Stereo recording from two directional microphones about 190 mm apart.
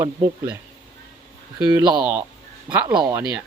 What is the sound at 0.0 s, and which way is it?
A man's voice, 15° right (ahead or behind).